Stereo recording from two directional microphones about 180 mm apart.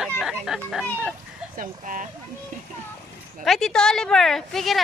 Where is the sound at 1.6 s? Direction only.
50° right (ahead or behind).